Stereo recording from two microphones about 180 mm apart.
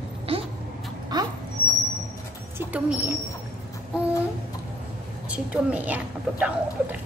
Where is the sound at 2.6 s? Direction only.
10° right (ahead or behind).